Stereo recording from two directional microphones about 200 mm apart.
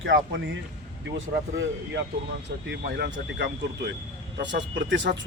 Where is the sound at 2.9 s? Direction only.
55° right (ahead or behind).